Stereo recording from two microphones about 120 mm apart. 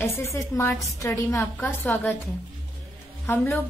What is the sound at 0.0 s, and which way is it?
A woman's voice, 25° left (ahead or behind).